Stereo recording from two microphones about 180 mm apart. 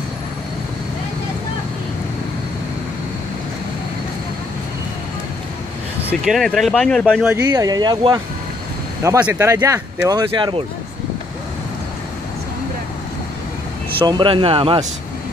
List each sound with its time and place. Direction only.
6.2 s speech: centre (ahead or behind)
7.4 s speech: 20° right (ahead or behind)
14.0 s speech: 25° right (ahead or behind)